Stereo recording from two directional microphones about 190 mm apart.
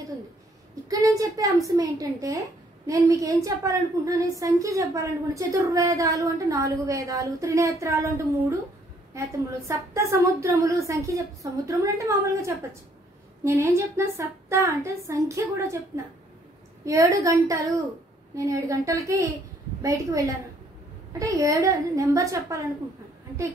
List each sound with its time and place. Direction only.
0.8 s a woman's voice: 20° right (ahead or behind)
16.8 s a woman's voice: 15° right (ahead or behind)